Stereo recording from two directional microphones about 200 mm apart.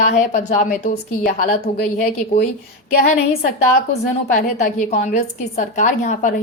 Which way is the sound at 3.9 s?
40° left (ahead or behind).